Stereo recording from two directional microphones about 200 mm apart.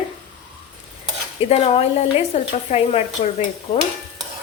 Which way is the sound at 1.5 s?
30° left (ahead or behind).